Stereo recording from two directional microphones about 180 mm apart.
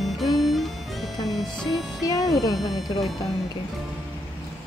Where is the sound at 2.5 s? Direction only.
Centre (ahead or behind).